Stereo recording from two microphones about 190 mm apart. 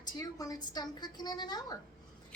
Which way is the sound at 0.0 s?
20° left (ahead or behind).